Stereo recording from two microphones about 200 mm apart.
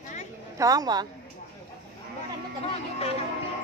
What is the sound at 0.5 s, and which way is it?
Speech, 20° right (ahead or behind).